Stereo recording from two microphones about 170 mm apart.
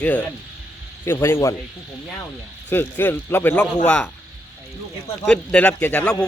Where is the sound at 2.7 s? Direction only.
10° left (ahead or behind).